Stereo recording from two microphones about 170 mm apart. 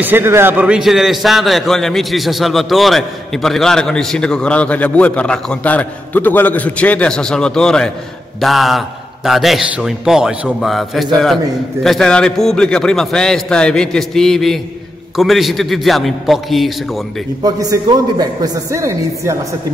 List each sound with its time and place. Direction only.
0.0 s a man's voice: 10° right (ahead or behind)
17.4 s a man's voice: 20° right (ahead or behind)